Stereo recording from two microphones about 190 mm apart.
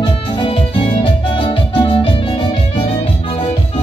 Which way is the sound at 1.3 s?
25° left (ahead or behind).